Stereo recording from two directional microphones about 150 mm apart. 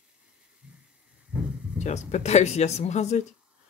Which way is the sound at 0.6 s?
10° right (ahead or behind).